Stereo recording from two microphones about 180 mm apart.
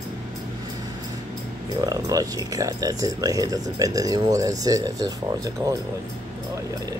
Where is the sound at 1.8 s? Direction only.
20° right (ahead or behind).